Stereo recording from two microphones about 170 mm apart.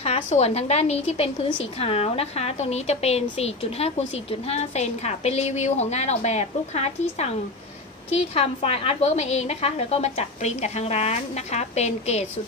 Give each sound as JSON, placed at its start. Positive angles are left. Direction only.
{"t": 0.0, "sound": "a woman's voice", "side_deg": 35}